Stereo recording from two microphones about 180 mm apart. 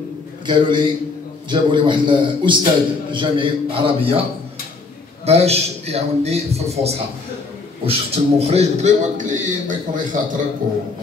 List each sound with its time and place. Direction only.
0.5 s a man's voice: 25° right (ahead or behind)
5.2 s a man's voice: 35° right (ahead or behind)